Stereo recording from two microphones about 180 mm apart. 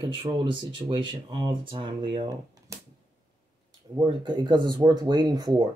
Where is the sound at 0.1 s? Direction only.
25° right (ahead or behind).